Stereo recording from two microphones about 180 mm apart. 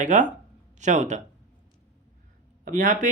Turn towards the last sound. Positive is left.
turn(degrees=-45)  # may be behind; listen again after turning